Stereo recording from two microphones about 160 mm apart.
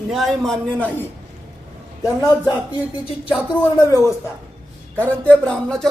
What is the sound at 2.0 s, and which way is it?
Speech, 25° left (ahead or behind).